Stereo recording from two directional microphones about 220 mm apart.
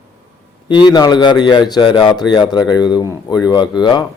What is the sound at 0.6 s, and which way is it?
A man's voice, 20° left (ahead or behind).